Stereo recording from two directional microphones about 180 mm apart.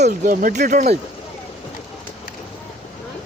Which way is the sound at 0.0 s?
45° right (ahead or behind).